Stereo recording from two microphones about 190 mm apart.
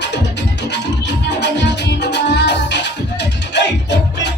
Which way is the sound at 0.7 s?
65° left (ahead or behind).